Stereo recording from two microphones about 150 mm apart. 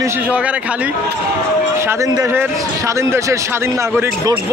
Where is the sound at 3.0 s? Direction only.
20° right (ahead or behind).